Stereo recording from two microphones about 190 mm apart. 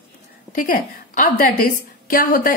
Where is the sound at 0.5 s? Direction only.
45° left (ahead or behind).